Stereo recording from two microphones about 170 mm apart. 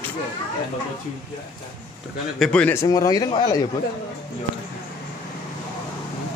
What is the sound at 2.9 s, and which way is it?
Speech, 20° left (ahead or behind).